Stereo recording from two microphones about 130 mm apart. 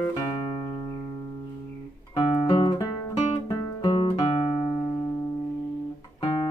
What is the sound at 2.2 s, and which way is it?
Guitar, 35° left (ahead or behind).